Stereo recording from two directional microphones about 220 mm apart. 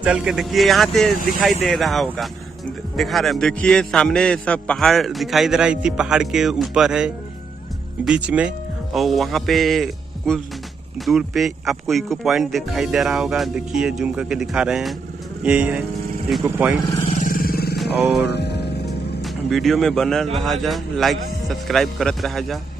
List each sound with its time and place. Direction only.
0.0 s a man's voice: 5° right (ahead or behind)
17.1 s vehicle: 40° left (ahead or behind)
18.3 s music: 50° left (ahead or behind)
19.2 s a man's voice: centre (ahead or behind)